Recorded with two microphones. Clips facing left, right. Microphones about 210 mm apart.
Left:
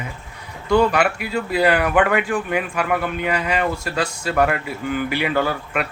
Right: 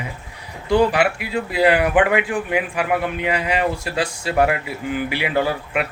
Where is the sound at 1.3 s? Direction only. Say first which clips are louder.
Right 1 dB; 20° right (ahead or behind).